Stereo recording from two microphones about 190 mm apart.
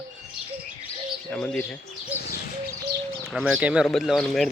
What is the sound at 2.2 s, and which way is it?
Bird, 55° left (ahead or behind).